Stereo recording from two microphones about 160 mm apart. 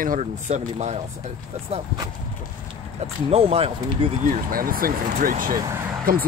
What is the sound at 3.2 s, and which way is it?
Speech, 40° right (ahead or behind).